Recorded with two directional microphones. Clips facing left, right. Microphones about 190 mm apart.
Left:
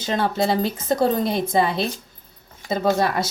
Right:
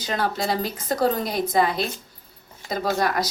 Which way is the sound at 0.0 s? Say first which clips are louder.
Left 4 dB; 25° left (ahead or behind).